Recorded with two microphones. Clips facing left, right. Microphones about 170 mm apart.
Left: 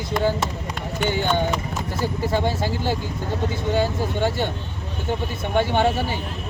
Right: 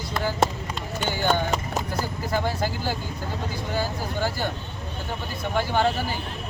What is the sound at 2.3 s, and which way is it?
Speech, 25° left (ahead or behind).